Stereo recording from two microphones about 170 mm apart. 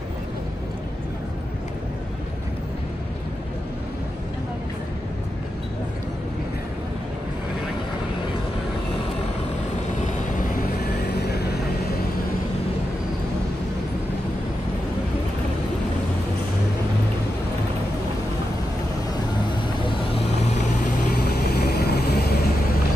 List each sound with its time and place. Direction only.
11.1 s vehicle: 75° left (ahead or behind)
21.5 s vehicle: 70° left (ahead or behind)